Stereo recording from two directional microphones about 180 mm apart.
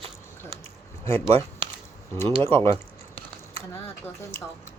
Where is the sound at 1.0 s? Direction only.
15° left (ahead or behind).